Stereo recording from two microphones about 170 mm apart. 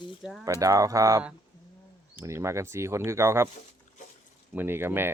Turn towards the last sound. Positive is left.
turn(degrees=-15)  # may be behind; listen again after turning